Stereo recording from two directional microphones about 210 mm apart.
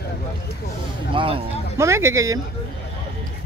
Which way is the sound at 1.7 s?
15° right (ahead or behind).